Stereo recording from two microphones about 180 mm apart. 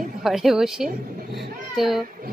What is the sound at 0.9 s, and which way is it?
Speech, 55° right (ahead or behind).